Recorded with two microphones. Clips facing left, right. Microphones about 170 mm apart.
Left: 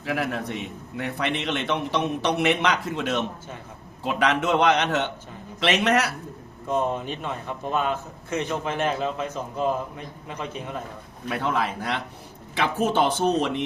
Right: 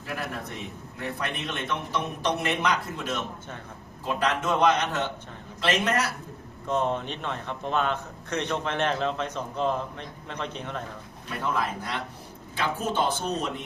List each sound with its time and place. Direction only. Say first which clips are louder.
0.0 s a man's voice: left 7 dB; 90° left; by 6.1 s 75° left (ahead or behind)
6.7 s a man's voice: left 2 dB; 10° left (ahead or behind)
11.3 s a man's voice: left 3 dB; 80° left